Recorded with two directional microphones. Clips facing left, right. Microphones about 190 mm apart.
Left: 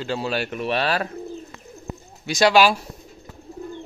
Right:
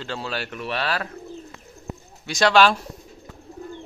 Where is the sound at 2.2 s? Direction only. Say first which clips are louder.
Left 1 dB; 10° left (ahead or behind).